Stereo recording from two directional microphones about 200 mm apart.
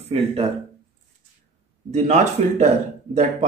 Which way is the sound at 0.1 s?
30° right (ahead or behind).